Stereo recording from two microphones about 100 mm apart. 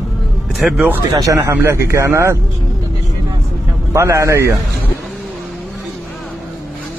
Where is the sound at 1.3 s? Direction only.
25° right (ahead or behind).